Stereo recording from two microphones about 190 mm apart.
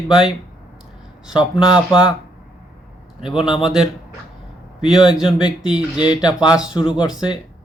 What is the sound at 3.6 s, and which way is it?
Speech, centre (ahead or behind).